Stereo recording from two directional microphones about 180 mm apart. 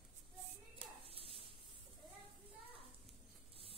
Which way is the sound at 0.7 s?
30° right (ahead or behind).